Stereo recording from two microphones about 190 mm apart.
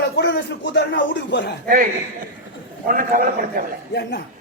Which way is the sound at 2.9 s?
45° right (ahead or behind).